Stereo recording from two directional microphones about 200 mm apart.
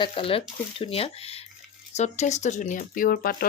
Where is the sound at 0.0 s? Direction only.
25° left (ahead or behind).